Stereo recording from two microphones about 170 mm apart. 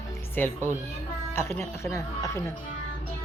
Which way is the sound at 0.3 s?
10° left (ahead or behind).